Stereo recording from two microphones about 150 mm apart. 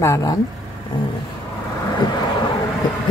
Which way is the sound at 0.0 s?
20° left (ahead or behind).